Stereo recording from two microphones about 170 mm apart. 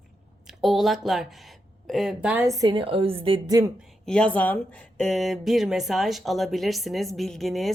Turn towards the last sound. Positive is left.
turn(degrees=0)  # may be behind; listen again after turning